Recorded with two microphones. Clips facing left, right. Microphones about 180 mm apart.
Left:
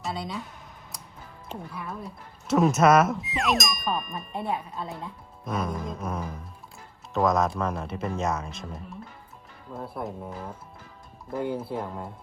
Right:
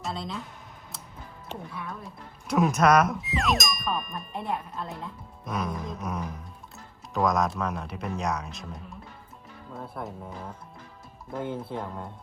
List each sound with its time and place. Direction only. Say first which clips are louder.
0.0 s speech: left 1 dB; centre (ahead or behind)
1.5 s speech: left 1 dB; centre (ahead or behind)
11.3 s speech: left 3 dB; centre (ahead or behind)